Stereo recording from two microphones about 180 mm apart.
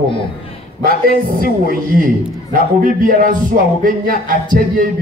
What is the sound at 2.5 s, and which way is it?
Speech, 50° right (ahead or behind).